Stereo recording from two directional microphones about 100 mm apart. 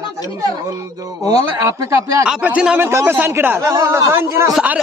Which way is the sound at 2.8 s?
25° right (ahead or behind).